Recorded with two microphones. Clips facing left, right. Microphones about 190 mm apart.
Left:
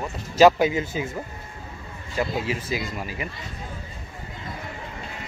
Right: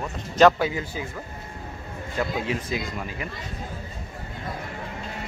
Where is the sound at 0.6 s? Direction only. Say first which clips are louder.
Left 4 dB; 20° left (ahead or behind).